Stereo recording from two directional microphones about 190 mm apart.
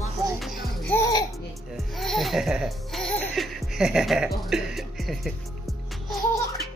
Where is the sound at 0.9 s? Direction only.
20° left (ahead or behind).